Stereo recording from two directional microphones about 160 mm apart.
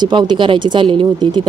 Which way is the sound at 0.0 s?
30° right (ahead or behind).